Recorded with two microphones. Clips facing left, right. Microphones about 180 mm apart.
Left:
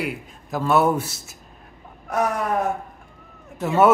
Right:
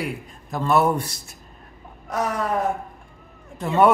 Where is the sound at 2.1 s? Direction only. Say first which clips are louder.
Left 2 dB; 15° left (ahead or behind).